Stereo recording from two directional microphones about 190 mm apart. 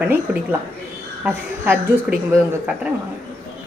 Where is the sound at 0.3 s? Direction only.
10° right (ahead or behind).